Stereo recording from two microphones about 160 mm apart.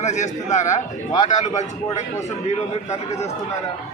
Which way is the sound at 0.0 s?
50° left (ahead or behind).